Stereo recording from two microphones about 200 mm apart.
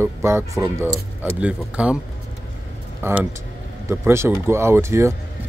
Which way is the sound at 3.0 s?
10° right (ahead or behind).